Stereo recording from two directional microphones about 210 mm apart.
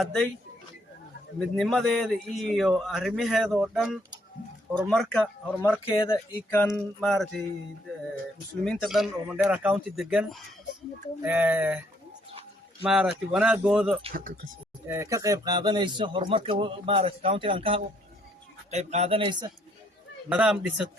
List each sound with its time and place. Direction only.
0.0 s speech: 5° left (ahead or behind)
1.5 s speech: centre (ahead or behind)
4.9 s speech: 5° left (ahead or behind)
8.6 s speech: centre (ahead or behind)
12.8 s speech: 5° right (ahead or behind)
14.1 s speech: 40° right (ahead or behind)
14.8 s speech: 15° right (ahead or behind)
20.3 s speech: 5° right (ahead or behind)